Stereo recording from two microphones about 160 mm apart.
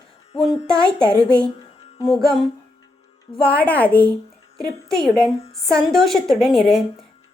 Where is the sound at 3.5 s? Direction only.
10° left (ahead or behind).